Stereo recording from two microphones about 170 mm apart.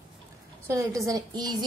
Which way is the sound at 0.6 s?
20° right (ahead or behind).